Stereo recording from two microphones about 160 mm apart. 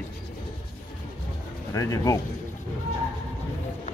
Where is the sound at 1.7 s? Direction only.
20° left (ahead or behind).